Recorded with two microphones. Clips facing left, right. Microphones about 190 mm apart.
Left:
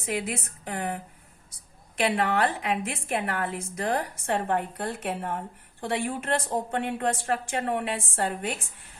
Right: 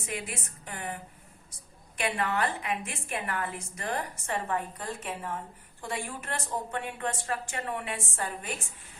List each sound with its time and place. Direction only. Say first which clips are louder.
0.0 s a woman's voice: left 7 dB; 75° left (ahead or behind)
2.0 s a woman's voice: left 5 dB; 70° left (ahead or behind)